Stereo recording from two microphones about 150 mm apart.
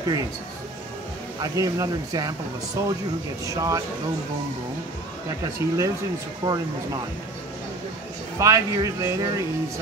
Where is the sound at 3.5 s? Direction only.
20° right (ahead or behind).